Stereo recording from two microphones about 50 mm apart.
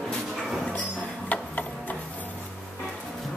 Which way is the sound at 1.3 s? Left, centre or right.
Left.